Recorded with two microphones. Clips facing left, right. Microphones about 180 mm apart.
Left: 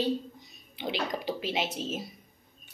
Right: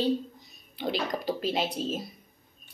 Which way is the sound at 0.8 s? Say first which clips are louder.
Right 2 dB; 45° right (ahead or behind).